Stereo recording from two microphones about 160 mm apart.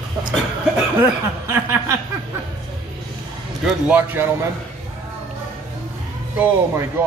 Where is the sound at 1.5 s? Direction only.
15° right (ahead or behind).